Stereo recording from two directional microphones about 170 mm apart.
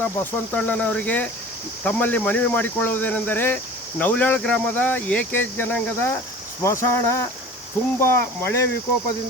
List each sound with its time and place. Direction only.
0.0 s speech: 10° left (ahead or behind)